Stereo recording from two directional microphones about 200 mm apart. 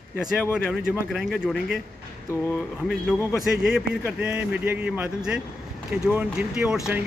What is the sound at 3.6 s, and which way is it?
Speech, 5° right (ahead or behind).